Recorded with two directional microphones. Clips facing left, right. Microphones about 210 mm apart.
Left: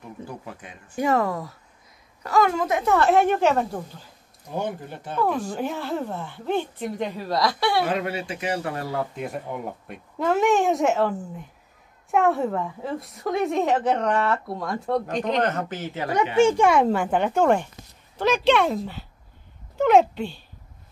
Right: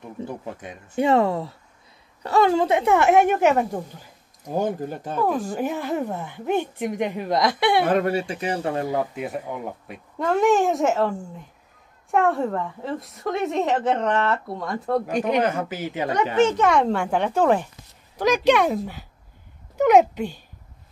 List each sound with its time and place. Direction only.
0.2 s speech: 25° right (ahead or behind)
4.6 s speech: 40° right (ahead or behind)
5.2 s speech: 5° right (ahead or behind)
7.8 s speech: 45° right (ahead or behind); by 9.0 s 25° right (ahead or behind)
9.1 s a woman's voice: centre (ahead or behind)
16.3 s a woman's voice: 10° left (ahead or behind)
18.1 s speech: 10° right (ahead or behind)